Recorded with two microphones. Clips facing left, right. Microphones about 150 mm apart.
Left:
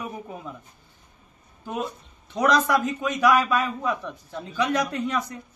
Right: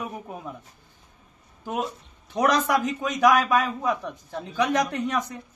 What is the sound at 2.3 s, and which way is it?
A man's voice, 15° right (ahead or behind).